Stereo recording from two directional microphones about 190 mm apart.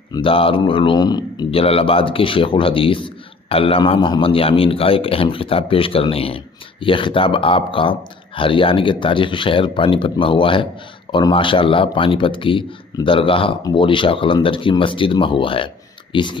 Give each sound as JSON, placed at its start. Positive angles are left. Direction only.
{"t": 0.1, "sound": "speech", "side_deg": 30}